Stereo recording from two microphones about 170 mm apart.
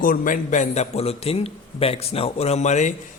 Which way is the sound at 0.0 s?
55° left (ahead or behind).